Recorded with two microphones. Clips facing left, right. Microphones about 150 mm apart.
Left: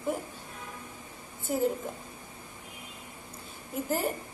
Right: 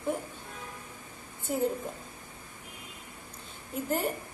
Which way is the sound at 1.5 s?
Centre (ahead or behind).